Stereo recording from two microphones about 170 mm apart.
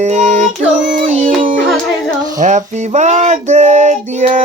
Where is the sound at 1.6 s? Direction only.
5° left (ahead or behind).